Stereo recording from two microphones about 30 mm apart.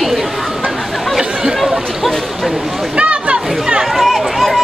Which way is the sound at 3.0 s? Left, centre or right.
Right.